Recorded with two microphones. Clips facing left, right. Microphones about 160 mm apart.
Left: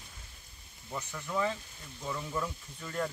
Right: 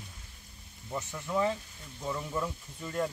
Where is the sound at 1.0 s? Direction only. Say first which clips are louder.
Right 3 dB; 20° right (ahead or behind).